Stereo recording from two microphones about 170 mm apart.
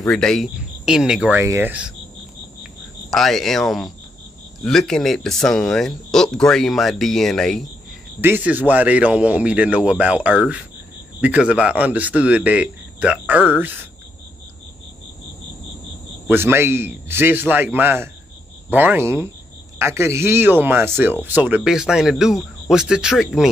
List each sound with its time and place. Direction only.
0.1 s speech: 5° left (ahead or behind)
3.1 s speech: centre (ahead or behind)
8.2 s speech: 10° right (ahead or behind)
16.3 s speech: 15° right (ahead or behind)